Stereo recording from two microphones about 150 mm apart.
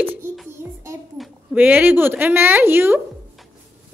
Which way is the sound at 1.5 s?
10° right (ahead or behind).